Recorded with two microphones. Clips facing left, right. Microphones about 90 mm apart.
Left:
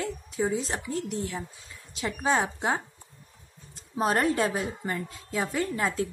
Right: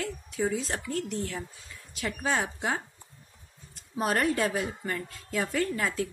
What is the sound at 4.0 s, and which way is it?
A woman's voice, 25° left (ahead or behind).